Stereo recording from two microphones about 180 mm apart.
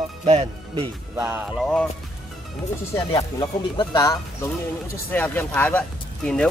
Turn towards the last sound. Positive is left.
turn(degrees=5)  # may be behind; listen again after turning